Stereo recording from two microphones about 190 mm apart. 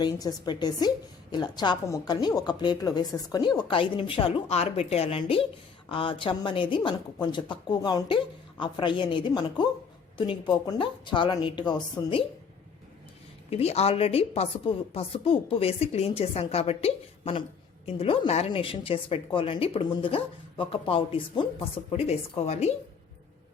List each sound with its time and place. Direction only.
0.0 s a woman's voice: 20° left (ahead or behind)
13.5 s a woman's voice: 35° left (ahead or behind)